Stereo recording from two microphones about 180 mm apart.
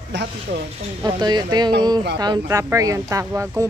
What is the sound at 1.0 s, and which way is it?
Speech, 25° right (ahead or behind).